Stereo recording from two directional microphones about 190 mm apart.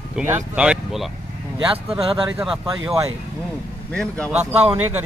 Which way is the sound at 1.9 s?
30° right (ahead or behind).